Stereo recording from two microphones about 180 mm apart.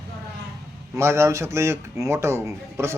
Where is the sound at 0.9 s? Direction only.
15° right (ahead or behind).